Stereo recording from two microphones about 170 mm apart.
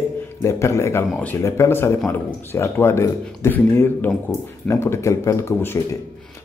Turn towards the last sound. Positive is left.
turn(degrees=15)  # may be behind; listen again after turning